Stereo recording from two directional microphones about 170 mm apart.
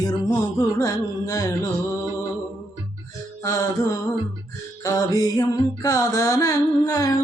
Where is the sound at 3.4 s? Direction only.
20° left (ahead or behind).